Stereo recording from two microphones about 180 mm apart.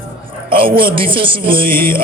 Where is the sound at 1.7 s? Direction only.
15° left (ahead or behind).